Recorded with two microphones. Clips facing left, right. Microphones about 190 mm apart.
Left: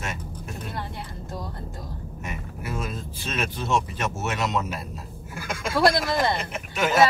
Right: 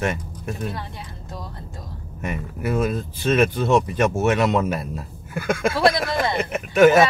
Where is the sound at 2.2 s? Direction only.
55° right (ahead or behind).